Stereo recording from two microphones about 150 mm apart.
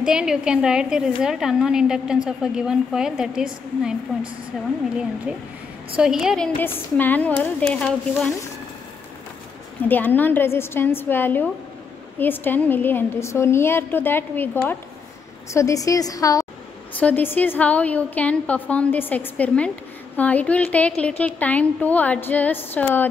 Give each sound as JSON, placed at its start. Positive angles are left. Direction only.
{"t": 0.0, "sound": "a woman's voice", "side_deg": -5}
{"t": 5.9, "sound": "a woman's voice", "side_deg": -5}
{"t": 6.6, "sound": "a woman's voice", "side_deg": 15}
{"t": 9.8, "sound": "a woman's voice", "side_deg": 10}
{"t": 17.0, "sound": "a woman's voice", "side_deg": 15}